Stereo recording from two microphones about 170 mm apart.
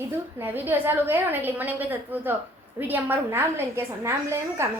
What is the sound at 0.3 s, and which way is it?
A woman's voice, 10° right (ahead or behind).